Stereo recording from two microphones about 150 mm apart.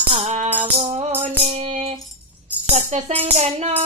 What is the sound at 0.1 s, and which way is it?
Music, 45° right (ahead or behind).